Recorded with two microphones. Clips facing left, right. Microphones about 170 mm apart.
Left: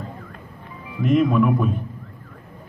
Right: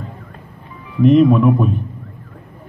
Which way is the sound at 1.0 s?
30° right (ahead or behind).